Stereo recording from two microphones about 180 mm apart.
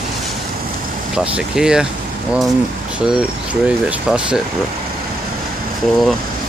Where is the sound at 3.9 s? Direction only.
5° right (ahead or behind).